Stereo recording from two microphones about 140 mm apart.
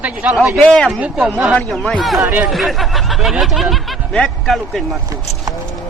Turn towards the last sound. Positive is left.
turn(degrees=5)  # may be behind; listen again after turning